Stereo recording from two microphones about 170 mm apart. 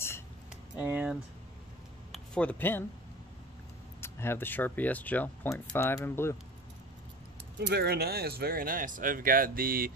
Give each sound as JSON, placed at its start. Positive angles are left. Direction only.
{"t": 0.7, "sound": "speech", "side_deg": -10}
{"t": 2.1, "sound": "speech", "side_deg": 5}
{"t": 4.0, "sound": "speech", "side_deg": 15}
{"t": 7.5, "sound": "speech", "side_deg": -80}